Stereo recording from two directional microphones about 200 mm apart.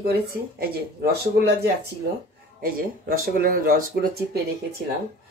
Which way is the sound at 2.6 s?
45° right (ahead or behind).